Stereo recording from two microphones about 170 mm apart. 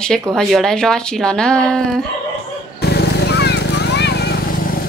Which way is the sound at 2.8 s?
75° left (ahead or behind).